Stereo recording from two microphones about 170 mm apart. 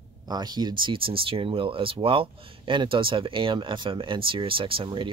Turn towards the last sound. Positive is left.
turn(degrees=-30)  # may be behind; listen again after turning